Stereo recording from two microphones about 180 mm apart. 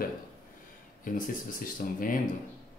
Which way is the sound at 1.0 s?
50° left (ahead or behind).